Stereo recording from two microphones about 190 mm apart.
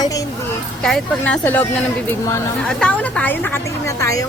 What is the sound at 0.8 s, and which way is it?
Speech, 5° left (ahead or behind).